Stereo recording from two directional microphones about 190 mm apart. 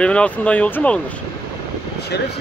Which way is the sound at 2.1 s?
60° left (ahead or behind).